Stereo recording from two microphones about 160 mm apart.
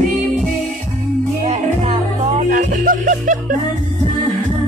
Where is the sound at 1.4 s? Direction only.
40° right (ahead or behind).